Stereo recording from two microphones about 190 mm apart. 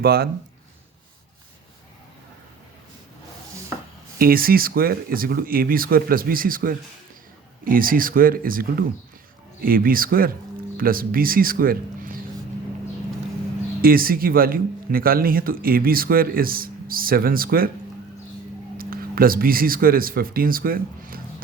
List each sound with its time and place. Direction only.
0.0 s speech: 55° right (ahead or behind)
4.2 s speech: 50° right (ahead or behind)
13.8 s speech: 50° right (ahead or behind)
18.8 s speech: 50° right (ahead or behind)